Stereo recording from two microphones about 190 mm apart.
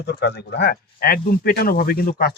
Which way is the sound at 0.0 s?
60° left (ahead or behind).